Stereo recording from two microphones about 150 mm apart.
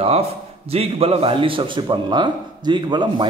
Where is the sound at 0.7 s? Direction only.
40° right (ahead or behind).